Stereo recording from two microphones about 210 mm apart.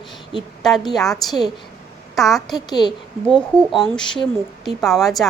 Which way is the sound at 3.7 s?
Centre (ahead or behind).